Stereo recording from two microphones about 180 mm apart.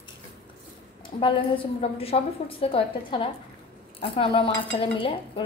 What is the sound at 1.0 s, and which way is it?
A woman's voice, 30° left (ahead or behind).